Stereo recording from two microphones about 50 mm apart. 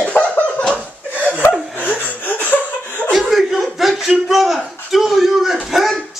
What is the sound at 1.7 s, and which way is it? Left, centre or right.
Laughter, left.